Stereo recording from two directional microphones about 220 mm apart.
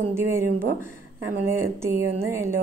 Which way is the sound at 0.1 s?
10° right (ahead or behind).